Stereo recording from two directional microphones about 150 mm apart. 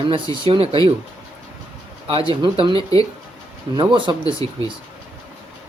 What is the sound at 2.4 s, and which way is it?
Speech, 35° right (ahead or behind).